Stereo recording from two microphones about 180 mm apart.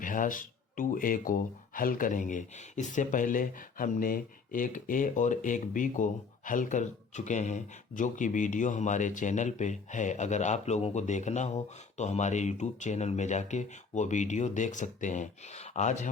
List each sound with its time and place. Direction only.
0.0 s speech: 45° left (ahead or behind)